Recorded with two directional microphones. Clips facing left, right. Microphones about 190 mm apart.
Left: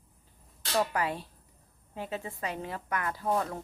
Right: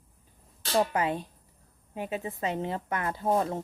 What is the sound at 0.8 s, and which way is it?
Speech, 20° right (ahead or behind).